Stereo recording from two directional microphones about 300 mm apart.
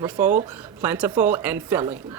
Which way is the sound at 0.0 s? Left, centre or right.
Centre.